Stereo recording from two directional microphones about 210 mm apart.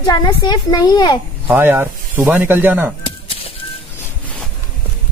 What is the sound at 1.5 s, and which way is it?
Speech, 10° right (ahead or behind).